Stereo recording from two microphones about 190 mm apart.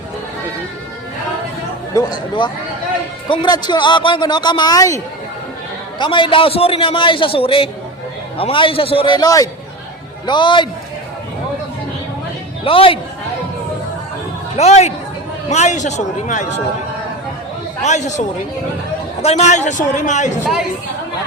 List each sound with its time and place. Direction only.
1.9 s a man's voice: 20° left (ahead or behind)
6.0 s a man's voice: 25° left (ahead or behind)
12.6 s a man's voice: 30° left (ahead or behind)
14.5 s a man's voice: 35° left (ahead or behind)
17.8 s a man's voice: 40° left (ahead or behind)